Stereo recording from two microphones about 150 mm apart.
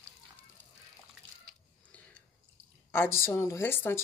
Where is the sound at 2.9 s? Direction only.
15° left (ahead or behind).